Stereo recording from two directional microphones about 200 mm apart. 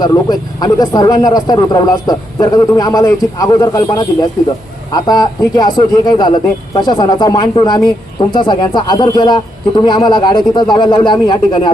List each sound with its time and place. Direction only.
0.0 s a man's voice: 20° left (ahead or behind)